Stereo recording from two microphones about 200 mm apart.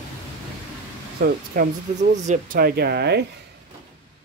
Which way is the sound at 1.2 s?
50° right (ahead or behind).